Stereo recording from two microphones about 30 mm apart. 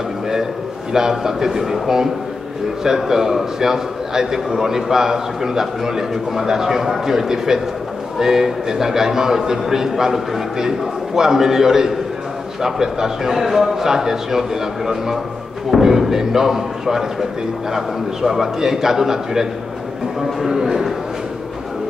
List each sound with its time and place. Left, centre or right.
0.9 s a man's voice: centre
20.5 s a man's voice: centre